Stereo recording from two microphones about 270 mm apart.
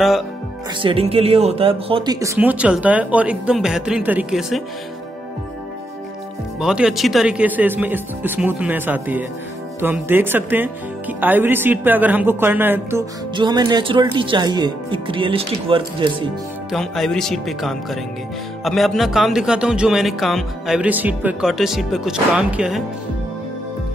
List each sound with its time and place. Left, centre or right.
0.7 s speech: centre
6.6 s speech: centre
16.7 s speech: centre